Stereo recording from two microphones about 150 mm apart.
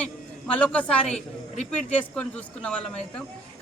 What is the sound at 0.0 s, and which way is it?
A woman's voice, 10° left (ahead or behind).